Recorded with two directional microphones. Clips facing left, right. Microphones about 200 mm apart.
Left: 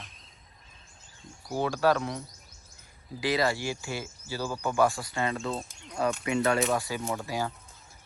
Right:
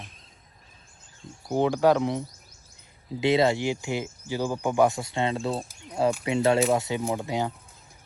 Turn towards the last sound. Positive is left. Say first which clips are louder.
# right 4 dB
turn(degrees=-20)  # may be behind; listen again after turning